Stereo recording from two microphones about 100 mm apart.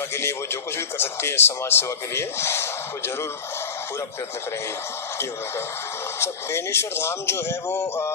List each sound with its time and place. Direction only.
0.7 s speech: 25° left (ahead or behind)
6.1 s speech: 25° left (ahead or behind)